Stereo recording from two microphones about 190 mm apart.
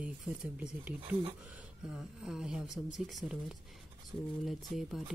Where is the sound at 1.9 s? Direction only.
5° right (ahead or behind).